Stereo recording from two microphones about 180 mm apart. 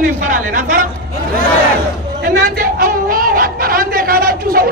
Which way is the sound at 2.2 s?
60° right (ahead or behind).